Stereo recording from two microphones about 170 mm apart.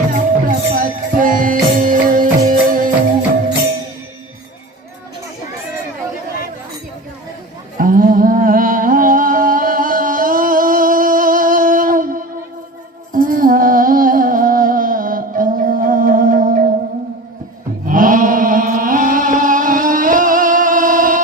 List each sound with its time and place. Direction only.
0.1 s music: 55° right (ahead or behind)
7.8 s music: 55° right (ahead or behind)
13.1 s music: 55° right (ahead or behind)
17.8 s chant: 50° right (ahead or behind)